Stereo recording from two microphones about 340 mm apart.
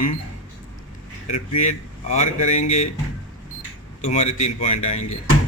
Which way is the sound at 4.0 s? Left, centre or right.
Centre.